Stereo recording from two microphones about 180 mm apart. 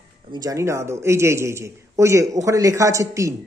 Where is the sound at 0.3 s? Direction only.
20° right (ahead or behind).